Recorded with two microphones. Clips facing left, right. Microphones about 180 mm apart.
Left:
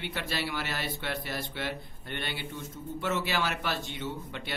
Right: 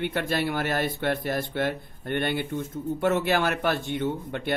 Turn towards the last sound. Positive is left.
turn(degrees=-50)  # may be behind; listen again after turning